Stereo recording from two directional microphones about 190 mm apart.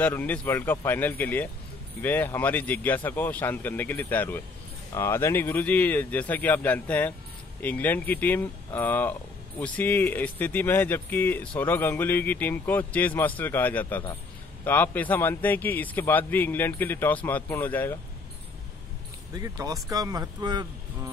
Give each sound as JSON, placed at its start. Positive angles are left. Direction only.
{"t": 0.0, "sound": "speech", "side_deg": 10}
{"t": 19.3, "sound": "speech", "side_deg": -20}